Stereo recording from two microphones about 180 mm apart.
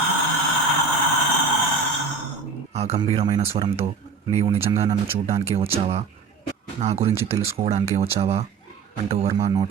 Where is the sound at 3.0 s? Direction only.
25° right (ahead or behind).